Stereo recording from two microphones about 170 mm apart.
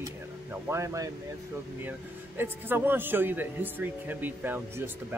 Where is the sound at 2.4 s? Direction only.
10° right (ahead or behind).